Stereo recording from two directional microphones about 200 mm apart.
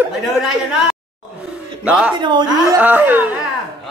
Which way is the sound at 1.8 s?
5° right (ahead or behind).